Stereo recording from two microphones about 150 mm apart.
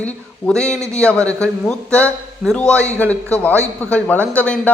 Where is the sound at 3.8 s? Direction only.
10° left (ahead or behind).